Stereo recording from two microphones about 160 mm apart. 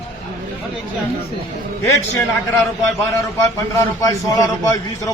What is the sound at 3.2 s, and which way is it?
A man's voice, 20° left (ahead or behind).